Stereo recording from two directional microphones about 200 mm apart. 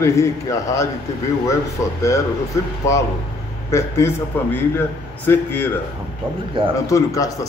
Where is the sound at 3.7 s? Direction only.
15° left (ahead or behind).